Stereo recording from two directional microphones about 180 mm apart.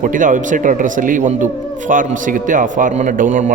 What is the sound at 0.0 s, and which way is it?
A man's voice, 45° right (ahead or behind).